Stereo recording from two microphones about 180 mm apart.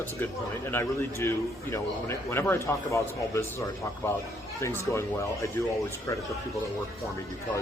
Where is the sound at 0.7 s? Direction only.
15° left (ahead or behind).